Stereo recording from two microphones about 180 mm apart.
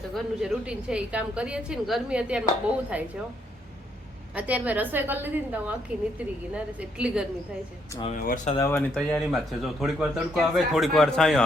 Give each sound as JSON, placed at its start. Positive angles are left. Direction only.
{"t": 0.1, "sound": "a man's voice", "side_deg": 0}
{"t": 4.4, "sound": "a woman's voice", "side_deg": -10}
{"t": 8.1, "sound": "speech", "side_deg": 45}
{"t": 8.5, "sound": "speech", "side_deg": 15}
{"t": 9.0, "sound": "a man's voice", "side_deg": 5}